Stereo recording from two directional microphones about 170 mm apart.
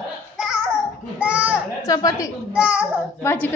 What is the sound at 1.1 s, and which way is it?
Speech, 10° right (ahead or behind).